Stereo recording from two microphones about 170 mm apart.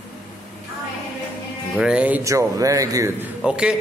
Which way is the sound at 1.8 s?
5° right (ahead or behind).